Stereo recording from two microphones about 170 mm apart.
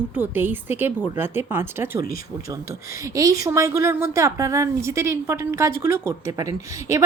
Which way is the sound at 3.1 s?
20° right (ahead or behind).